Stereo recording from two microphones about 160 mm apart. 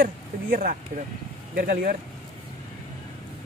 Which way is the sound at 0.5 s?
60° right (ahead or behind).